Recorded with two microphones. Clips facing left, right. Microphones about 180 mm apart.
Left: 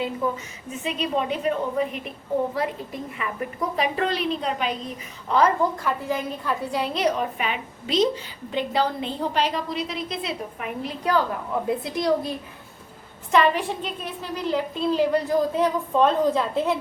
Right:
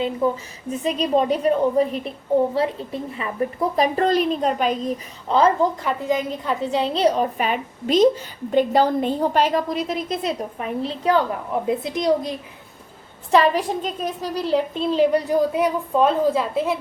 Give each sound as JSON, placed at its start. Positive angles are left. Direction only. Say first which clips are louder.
{"t": 0.2, "sound": "a child's voice", "louder": "right 6 dB", "side_deg": -25}
{"t": 0.7, "sound": "a woman's voice", "louder": "right 6 dB", "side_deg": -35}
{"t": 5.3, "sound": "a woman's voice", "louder": "right 3 dB", "side_deg": -25}
{"t": 10.8, "sound": "a child's voice", "louder": "right 3 dB", "side_deg": -25}
{"t": 13.3, "sound": "a woman's voice", "louder": "right 3 dB", "side_deg": -35}
{"t": 14.9, "sound": "a woman's voice", "louder": "right 4 dB", "side_deg": -15}